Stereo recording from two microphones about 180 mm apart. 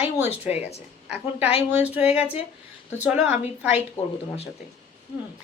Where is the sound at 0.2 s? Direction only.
10° right (ahead or behind).